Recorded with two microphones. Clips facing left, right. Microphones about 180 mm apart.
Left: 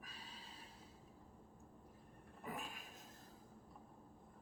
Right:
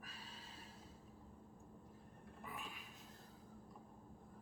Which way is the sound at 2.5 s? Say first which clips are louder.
Left 5 dB; 45° left (ahead or behind).